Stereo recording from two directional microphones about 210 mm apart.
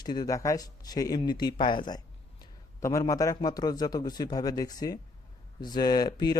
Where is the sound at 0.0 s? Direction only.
20° left (ahead or behind).